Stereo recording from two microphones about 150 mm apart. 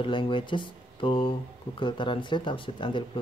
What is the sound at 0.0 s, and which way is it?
Speech, 35° left (ahead or behind).